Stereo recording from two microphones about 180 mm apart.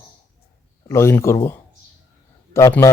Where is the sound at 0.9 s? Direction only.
15° left (ahead or behind).